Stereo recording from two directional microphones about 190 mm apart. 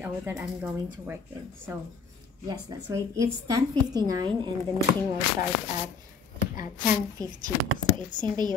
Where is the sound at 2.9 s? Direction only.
15° right (ahead or behind).